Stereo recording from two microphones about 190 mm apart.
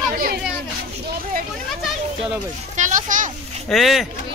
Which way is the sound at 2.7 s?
40° right (ahead or behind).